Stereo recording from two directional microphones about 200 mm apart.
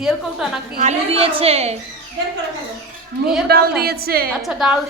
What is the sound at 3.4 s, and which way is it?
Speech, 50° right (ahead or behind).